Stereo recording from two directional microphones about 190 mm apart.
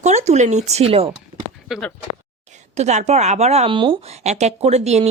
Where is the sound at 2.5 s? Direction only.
35° right (ahead or behind).